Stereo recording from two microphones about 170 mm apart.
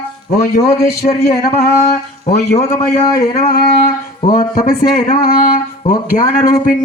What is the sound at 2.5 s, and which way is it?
Speech, 40° left (ahead or behind).